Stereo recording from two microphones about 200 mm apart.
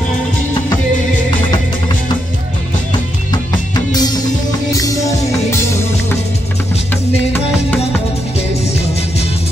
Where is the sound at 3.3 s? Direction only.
20° left (ahead or behind).